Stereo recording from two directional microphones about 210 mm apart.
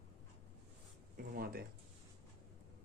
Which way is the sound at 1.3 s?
45° right (ahead or behind).